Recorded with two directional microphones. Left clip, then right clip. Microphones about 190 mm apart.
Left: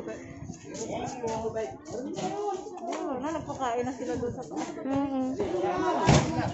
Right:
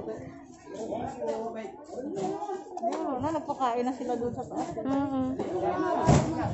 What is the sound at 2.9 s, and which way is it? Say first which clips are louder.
A child's voice: right 3 dB; 55° right (ahead or behind).